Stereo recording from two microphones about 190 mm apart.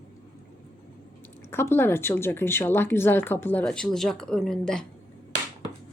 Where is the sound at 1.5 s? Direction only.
10° left (ahead or behind).